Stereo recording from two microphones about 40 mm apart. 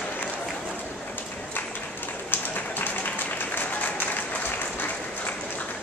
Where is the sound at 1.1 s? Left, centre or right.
Left.